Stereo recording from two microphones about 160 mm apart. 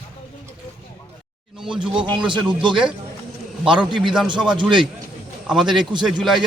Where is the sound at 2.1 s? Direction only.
30° right (ahead or behind).